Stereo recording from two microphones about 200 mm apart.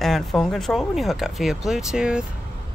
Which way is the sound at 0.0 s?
Centre (ahead or behind).